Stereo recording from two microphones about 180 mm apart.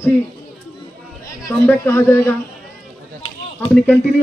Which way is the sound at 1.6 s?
10° left (ahead or behind).